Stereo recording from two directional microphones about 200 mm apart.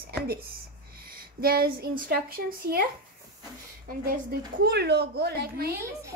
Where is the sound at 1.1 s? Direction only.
50° right (ahead or behind).